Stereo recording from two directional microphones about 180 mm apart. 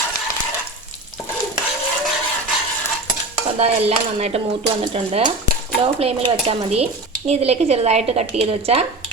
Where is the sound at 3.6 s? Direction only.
35° right (ahead or behind).